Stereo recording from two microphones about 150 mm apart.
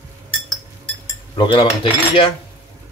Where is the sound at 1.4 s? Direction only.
35° left (ahead or behind).